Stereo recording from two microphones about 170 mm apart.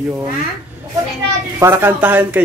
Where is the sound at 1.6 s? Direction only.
15° right (ahead or behind).